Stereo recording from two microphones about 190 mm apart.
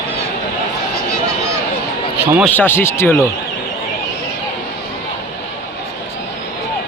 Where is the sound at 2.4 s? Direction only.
10° left (ahead or behind).